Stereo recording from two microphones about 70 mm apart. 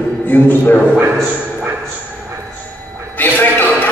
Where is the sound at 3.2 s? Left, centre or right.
Left.